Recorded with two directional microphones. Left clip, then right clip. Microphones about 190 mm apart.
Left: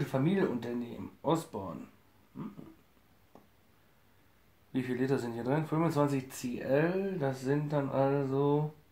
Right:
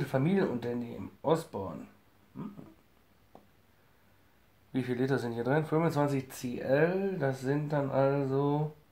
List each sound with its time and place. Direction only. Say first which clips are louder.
0.0 s speech: right 1 dB; 30° right (ahead or behind)
3.3 s a sound: right 2 dB; 30° right (ahead or behind)
4.7 s speech: right 1 dB; 35° right (ahead or behind)